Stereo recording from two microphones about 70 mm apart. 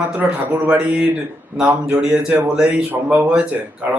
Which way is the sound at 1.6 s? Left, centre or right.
Right.